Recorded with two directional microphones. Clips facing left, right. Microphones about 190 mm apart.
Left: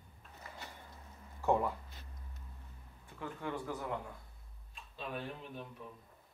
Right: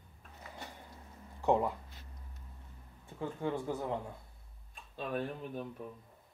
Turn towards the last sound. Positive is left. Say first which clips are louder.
# right 6 dB
turn(degrees=-45)  # may be behind; listen again after turning